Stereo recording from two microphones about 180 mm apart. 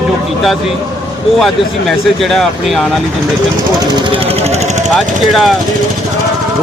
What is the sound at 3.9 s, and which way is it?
Speech, 35° right (ahead or behind).